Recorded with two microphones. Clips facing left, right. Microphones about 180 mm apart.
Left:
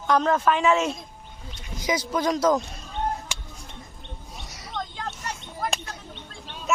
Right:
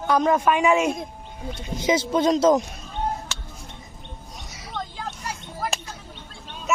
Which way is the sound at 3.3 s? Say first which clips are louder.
Right 1 dB; 10° left (ahead or behind).